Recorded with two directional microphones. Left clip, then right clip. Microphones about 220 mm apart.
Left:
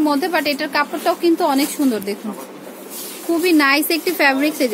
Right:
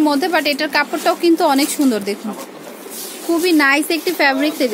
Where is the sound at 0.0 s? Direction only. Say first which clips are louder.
Right 2 dB; 15° right (ahead or behind).